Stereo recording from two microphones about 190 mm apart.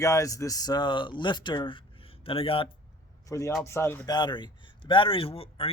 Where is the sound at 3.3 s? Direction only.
15° left (ahead or behind).